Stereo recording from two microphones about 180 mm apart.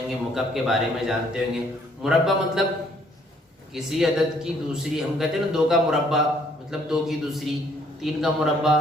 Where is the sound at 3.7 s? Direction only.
Centre (ahead or behind).